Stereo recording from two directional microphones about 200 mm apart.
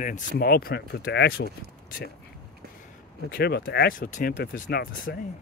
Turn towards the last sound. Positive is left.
turn(degrees=50)  # may be behind; listen again after turning